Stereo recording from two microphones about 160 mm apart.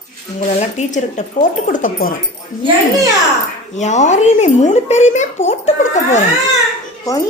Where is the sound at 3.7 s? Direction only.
45° left (ahead or behind).